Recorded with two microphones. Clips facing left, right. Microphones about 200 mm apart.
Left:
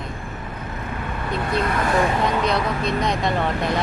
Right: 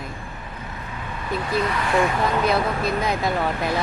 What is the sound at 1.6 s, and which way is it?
Speech, 50° left (ahead or behind).